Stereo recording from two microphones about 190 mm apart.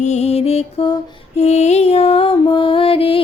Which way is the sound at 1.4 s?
35° left (ahead or behind).